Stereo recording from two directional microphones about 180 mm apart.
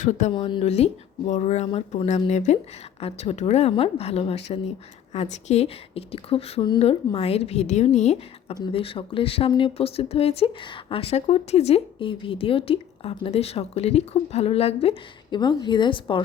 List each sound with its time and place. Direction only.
0.0 s speech: 40° left (ahead or behind)
0.3 s speech: 30° left (ahead or behind)